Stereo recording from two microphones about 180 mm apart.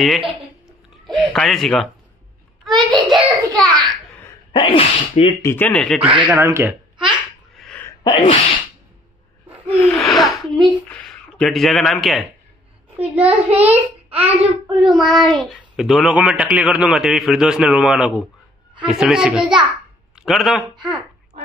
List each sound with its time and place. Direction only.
0.0 s a child's voice: centre (ahead or behind)
3.5 s a sound: centre (ahead or behind)
4.5 s speech: 30° left (ahead or behind)
5.4 s a man's voice: 10° left (ahead or behind); by 6.8 s 15° right (ahead or behind)
7.5 s a sound: centre (ahead or behind)
8.0 s sneeze: 25° left (ahead or behind)
9.7 s gasp: 10° left (ahead or behind)
9.9 s a sound: centre (ahead or behind)
12.9 s a child's voice: 10° right (ahead or behind)
13.7 s a child's voice: 35° right (ahead or behind)
14.7 s a man's voice: 5° right (ahead or behind)